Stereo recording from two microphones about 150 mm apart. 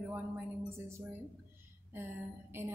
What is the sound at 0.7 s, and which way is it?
A woman's voice, 15° right (ahead or behind).